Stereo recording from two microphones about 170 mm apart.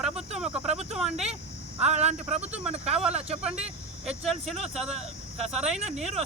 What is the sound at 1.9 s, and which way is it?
Speech, 40° right (ahead or behind).